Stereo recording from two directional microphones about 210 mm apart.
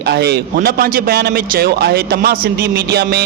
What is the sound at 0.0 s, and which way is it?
Speech, 50° right (ahead or behind).